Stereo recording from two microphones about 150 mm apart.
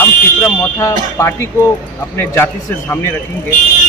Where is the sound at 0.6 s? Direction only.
20° left (ahead or behind).